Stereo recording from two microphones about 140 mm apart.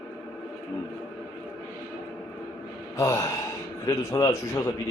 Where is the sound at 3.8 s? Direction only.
25° left (ahead or behind).